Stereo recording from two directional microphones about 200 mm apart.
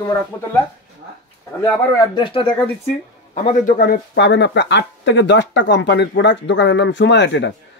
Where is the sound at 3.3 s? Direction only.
40° left (ahead or behind).